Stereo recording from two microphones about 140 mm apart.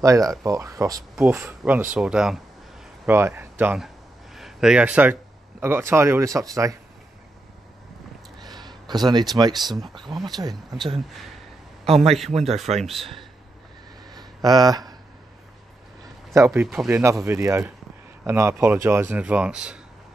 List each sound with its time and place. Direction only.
0.0 s speech: 25° right (ahead or behind); by 2.4 s 5° right (ahead or behind)
3.1 s speech: 15° right (ahead or behind)
3.8 s a sound: centre (ahead or behind)
5.6 s speech: 15° right (ahead or behind)
8.4 s a sound: 30° right (ahead or behind)
10.2 s speech: 30° right (ahead or behind)
11.8 s a man's voice: 45° right (ahead or behind)
12.8 s speech: centre (ahead or behind)
14.1 s a sound: 30° right (ahead or behind)
16.3 s speech: 20° right (ahead or behind); by 19.8 s 5° right (ahead or behind)